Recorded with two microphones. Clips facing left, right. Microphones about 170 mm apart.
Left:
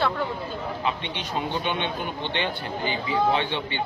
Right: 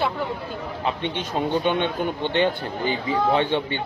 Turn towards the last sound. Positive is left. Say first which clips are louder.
# right 3 dB
turn(degrees=-45)  # may be behind; listen again after turning